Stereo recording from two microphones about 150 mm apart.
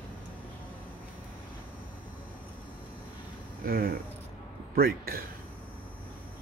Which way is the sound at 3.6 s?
85° right.